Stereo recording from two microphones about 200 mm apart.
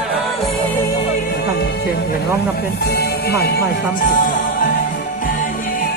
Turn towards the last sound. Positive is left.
turn(degrees=40)  # may be behind; listen again after turning